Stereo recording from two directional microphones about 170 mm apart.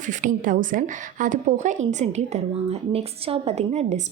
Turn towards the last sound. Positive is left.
turn(degrees=-40)  # may be behind; listen again after turning